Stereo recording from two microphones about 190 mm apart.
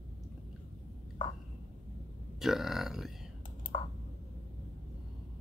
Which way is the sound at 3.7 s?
25° left (ahead or behind).